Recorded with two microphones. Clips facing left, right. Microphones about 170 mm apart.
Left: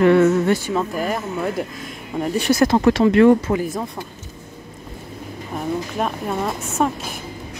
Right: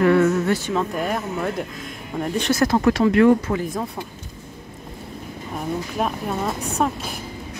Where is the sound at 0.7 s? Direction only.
5° left (ahead or behind).